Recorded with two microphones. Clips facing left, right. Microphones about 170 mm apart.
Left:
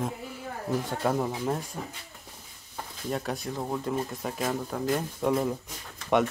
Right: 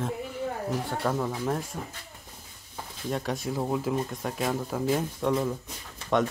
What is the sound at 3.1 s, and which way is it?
Speech, centre (ahead or behind).